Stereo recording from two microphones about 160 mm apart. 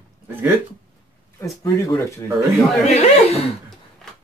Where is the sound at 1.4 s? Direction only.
20° left (ahead or behind).